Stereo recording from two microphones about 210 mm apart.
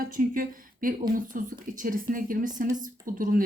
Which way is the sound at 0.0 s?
40° right (ahead or behind).